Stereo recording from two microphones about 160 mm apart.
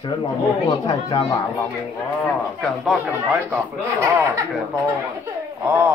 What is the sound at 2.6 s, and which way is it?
Speech, centre (ahead or behind).